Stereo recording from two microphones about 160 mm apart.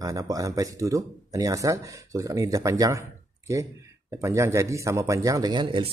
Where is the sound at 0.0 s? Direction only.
25° right (ahead or behind).